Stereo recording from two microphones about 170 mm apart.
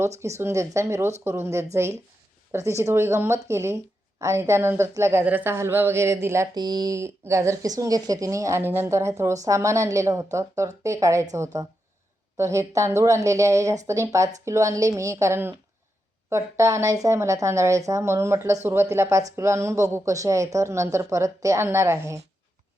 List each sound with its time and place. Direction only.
0.0 s speech: 15° right (ahead or behind)